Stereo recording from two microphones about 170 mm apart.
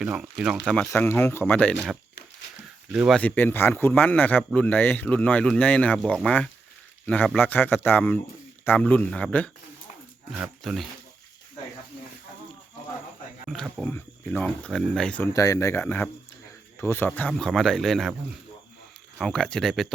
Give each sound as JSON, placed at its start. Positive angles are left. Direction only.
{"t": 0.0, "sound": "speech", "side_deg": -5}
{"t": 0.9, "sound": "speech", "side_deg": 15}
{"t": 2.9, "sound": "speech", "side_deg": -5}
{"t": 3.2, "sound": "speech", "side_deg": 10}
{"t": 10.3, "sound": "speech", "side_deg": -5}
{"t": 13.5, "sound": "speech", "side_deg": 0}
{"t": 13.8, "sound": "speech", "side_deg": 10}
{"t": 15.3, "sound": "speech", "side_deg": 20}
{"t": 19.2, "sound": "speech", "side_deg": 5}